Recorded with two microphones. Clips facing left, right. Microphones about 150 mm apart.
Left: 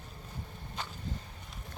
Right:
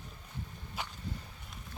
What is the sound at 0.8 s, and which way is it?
Whip, 10° right (ahead or behind).